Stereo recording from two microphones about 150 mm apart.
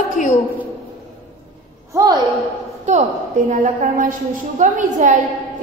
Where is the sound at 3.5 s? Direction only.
55° right (ahead or behind).